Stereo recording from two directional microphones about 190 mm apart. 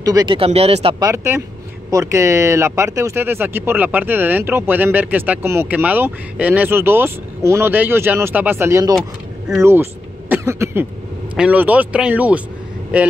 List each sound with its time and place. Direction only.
0.0 s speech: 20° right (ahead or behind)
1.0 s speech: 15° right (ahead or behind)
10.3 s cough: 15° right (ahead or behind)
11.3 s speech: 5° right (ahead or behind)